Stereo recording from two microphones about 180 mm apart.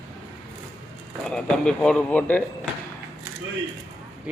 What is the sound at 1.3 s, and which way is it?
A man's voice, 5° left (ahead or behind).